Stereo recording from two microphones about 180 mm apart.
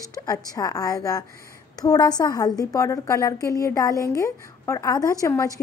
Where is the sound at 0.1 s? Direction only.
20° left (ahead or behind).